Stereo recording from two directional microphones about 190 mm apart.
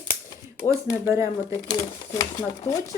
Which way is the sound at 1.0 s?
15° right (ahead or behind).